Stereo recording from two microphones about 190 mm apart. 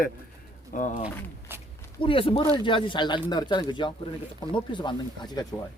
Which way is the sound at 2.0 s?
25° left (ahead or behind).